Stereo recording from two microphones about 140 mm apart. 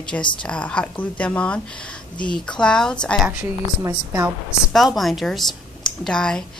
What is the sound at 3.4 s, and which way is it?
Speech, 20° right (ahead or behind).